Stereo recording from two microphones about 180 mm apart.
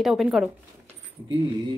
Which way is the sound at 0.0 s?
5° right (ahead or behind).